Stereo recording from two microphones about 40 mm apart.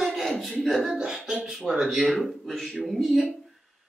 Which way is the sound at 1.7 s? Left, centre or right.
Centre.